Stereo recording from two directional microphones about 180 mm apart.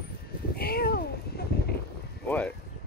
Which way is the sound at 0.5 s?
60° left (ahead or behind).